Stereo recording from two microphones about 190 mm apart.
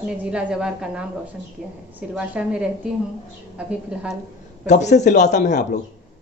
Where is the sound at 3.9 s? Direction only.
5° right (ahead or behind).